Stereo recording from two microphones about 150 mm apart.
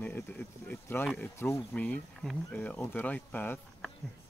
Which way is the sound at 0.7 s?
15° left (ahead or behind).